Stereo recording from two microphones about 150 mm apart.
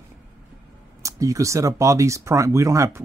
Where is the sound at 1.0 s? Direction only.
20° right (ahead or behind).